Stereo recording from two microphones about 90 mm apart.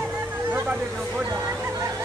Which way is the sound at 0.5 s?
20° right (ahead or behind).